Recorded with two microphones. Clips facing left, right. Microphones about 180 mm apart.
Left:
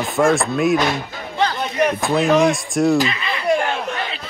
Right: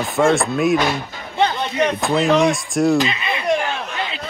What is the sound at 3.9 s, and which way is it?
Crowd, 20° right (ahead or behind).